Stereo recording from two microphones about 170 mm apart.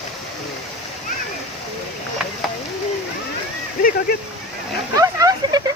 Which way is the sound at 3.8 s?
55° left (ahead or behind).